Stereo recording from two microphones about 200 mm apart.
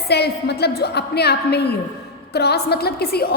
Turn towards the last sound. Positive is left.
turn(degrees=50)  # may be behind; listen again after turning